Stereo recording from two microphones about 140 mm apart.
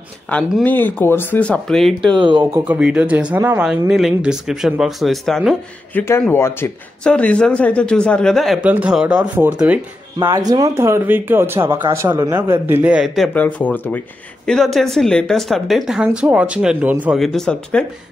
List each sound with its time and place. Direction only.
0.3 s speech: 10° left (ahead or behind)
2.1 s speech: 35° right (ahead or behind)
2.5 s speech: 10° right (ahead or behind)
3.9 s speech: 5° right (ahead or behind)
5.9 s a man's voice: 20° left (ahead or behind); by 8.6 s centre (ahead or behind)
8.6 s speech: 10° right (ahead or behind)
10.2 s speech: 25° right (ahead or behind); by 13.3 s centre (ahead or behind)
13.3 s speech: 10° left (ahead or behind); by 17.2 s 10° right (ahead or behind)
17.2 s speech: 5° left (ahead or behind)